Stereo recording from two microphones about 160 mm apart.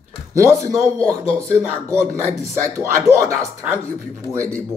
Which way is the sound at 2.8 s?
20° right (ahead or behind).